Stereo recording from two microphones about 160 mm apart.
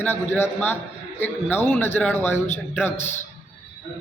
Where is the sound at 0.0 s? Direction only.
10° left (ahead or behind).